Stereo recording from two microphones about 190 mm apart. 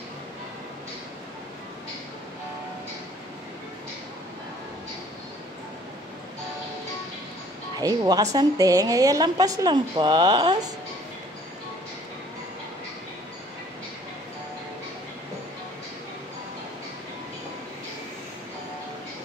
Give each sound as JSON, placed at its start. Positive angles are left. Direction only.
{"t": 7.8, "sound": "a woman's voice", "side_deg": -20}